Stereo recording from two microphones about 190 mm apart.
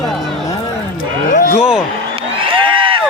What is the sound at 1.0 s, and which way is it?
Speech, 50° left (ahead or behind).